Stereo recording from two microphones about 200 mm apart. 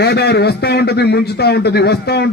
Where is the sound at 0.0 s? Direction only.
55° left (ahead or behind).